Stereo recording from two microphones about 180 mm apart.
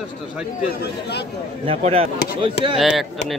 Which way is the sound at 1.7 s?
35° right (ahead or behind).